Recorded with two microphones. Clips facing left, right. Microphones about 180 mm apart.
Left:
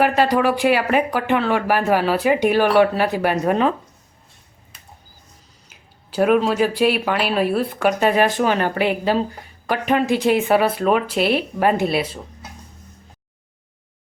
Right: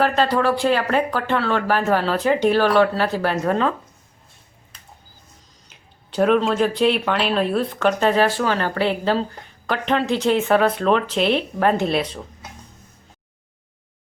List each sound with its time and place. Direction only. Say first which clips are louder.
0.0 s speech: left 2 dB; 10° left (ahead or behind)
5.6 s speech: left 1 dB; 5° left (ahead or behind)